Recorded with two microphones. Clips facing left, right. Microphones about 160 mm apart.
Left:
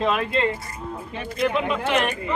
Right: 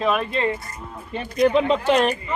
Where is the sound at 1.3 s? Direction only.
35° right (ahead or behind).